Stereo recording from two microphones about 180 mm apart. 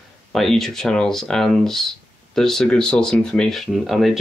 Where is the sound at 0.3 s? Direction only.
Centre (ahead or behind).